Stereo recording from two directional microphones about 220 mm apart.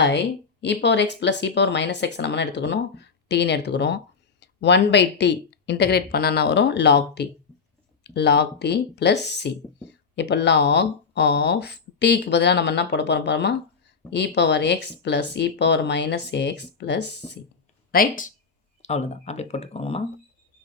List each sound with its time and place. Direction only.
0.0 s speech: 50° left (ahead or behind)
17.9 s speech: 40° left (ahead or behind)